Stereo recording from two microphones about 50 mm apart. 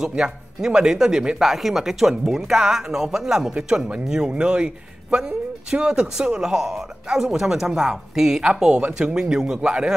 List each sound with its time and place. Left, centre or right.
0.1 s a man's voice: centre
9.6 s a man's voice: right